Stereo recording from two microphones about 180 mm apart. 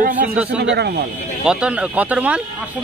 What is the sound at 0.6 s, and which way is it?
Speech, 65° right (ahead or behind).